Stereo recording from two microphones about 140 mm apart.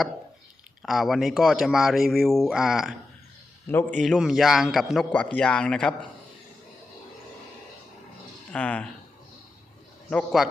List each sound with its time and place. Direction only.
0.8 s speech: centre (ahead or behind)
3.7 s speech: 15° left (ahead or behind)
4.0 s speech: centre (ahead or behind)
8.5 s speech: 10° left (ahead or behind)
10.1 s speech: centre (ahead or behind)